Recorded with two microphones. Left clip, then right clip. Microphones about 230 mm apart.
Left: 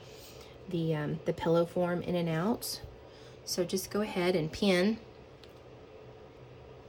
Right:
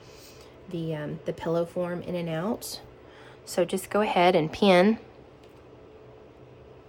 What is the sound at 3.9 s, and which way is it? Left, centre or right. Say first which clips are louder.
Speech: right 13 dB; right.